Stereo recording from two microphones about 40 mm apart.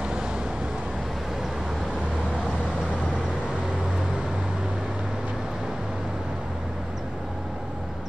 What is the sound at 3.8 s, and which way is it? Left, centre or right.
Vehicle, centre.